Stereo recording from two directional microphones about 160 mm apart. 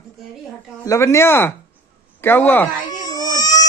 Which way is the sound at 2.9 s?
25° left (ahead or behind).